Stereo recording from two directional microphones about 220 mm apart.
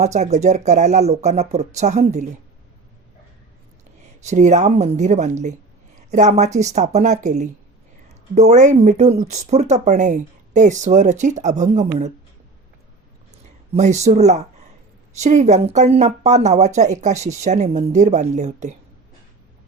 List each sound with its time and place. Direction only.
0.0 s speech: 30° right (ahead or behind)
4.2 s speech: 30° right (ahead or behind)
13.7 s speech: 30° right (ahead or behind)